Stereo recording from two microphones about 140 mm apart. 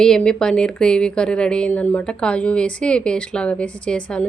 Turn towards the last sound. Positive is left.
turn(degrees=5)  # may be behind; listen again after turning